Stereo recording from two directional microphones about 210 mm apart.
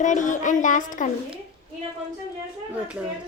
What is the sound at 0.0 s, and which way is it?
A child's voice, 35° left (ahead or behind).